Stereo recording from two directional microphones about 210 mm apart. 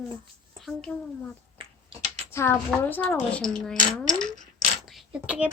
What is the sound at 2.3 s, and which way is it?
Child singing, 10° left (ahead or behind).